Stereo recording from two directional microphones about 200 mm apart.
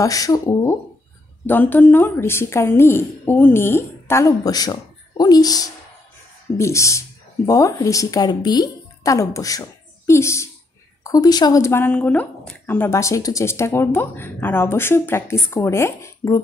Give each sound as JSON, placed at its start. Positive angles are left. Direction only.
{"t": 0.0, "sound": "a woman's voice", "side_deg": 15}